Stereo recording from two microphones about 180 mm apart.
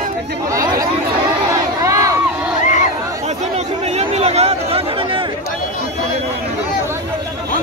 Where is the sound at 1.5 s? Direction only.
20° right (ahead or behind).